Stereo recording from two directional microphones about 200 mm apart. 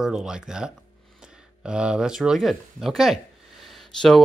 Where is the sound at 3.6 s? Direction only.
Centre (ahead or behind).